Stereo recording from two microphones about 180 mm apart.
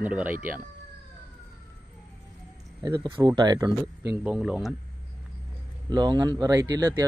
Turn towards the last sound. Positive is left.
turn(degrees=-15)  # may be behind; listen again after turning